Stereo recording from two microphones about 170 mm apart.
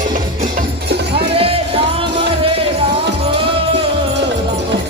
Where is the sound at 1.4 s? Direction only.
35° right (ahead or behind).